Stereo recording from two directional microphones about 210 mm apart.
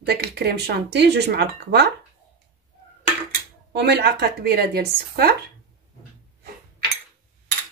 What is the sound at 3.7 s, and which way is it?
Speech, 50° right (ahead or behind).